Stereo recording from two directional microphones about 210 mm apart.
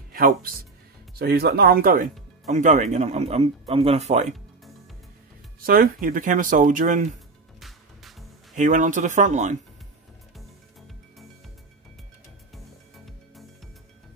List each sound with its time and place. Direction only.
0.1 s speech: 40° right (ahead or behind)
5.6 s speech: 45° right (ahead or behind)
8.5 s speech: 35° right (ahead or behind)